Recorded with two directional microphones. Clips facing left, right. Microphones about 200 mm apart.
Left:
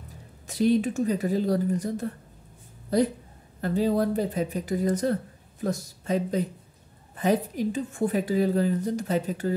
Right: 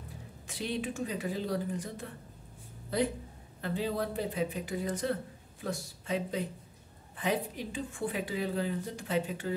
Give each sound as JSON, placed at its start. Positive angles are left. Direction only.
{"t": 0.5, "sound": "a woman's voice", "side_deg": 40}